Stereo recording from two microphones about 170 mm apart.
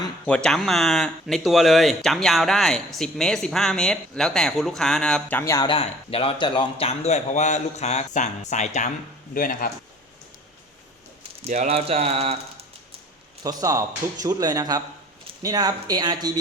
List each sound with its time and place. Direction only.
0.3 s speech: 5° left (ahead or behind)
5.4 s speech: 15° left (ahead or behind)
5.6 s speech: 35° left (ahead or behind)
9.3 s speech: 55° left (ahead or behind)
11.4 s speech: 40° right (ahead or behind)
13.4 s speech: 20° right (ahead or behind)